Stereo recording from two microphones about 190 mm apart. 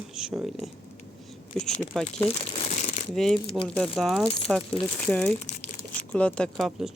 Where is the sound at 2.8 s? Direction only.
40° left (ahead or behind).